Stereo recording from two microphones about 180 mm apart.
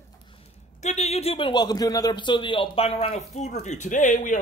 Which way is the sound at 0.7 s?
40° left (ahead or behind).